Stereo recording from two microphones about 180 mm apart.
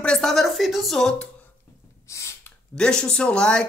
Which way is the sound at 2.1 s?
15° left (ahead or behind).